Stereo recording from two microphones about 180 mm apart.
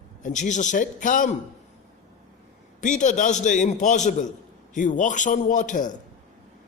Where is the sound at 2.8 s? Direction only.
45° left (ahead or behind).